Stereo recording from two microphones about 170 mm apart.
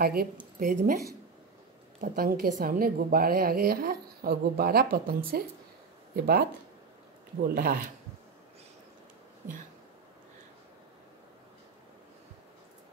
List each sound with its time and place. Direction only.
0.0 s a woman's voice: 65° right (ahead or behind)
0.6 s speech: 50° right (ahead or behind)
2.0 s a woman's voice: 60° right (ahead or behind)
7.4 s a woman's voice: 60° right (ahead or behind)